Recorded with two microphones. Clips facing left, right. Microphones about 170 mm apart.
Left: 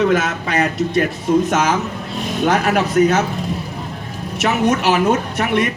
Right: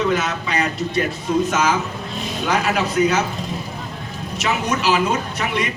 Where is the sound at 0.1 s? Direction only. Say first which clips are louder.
Left 3 dB; 55° left (ahead or behind).